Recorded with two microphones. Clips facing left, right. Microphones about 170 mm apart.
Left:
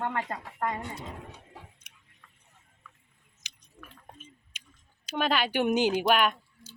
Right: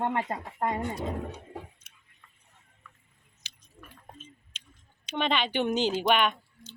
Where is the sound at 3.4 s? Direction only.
15° left (ahead or behind).